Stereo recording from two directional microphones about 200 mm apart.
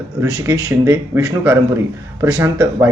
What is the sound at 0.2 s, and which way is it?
Speech, 15° right (ahead or behind).